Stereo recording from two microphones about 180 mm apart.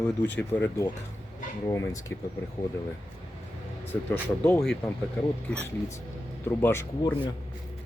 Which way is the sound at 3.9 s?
10° left (ahead or behind).